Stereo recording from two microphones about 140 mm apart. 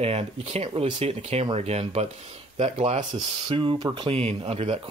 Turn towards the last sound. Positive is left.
turn(degrees=-45)  # may be behind; listen again after turning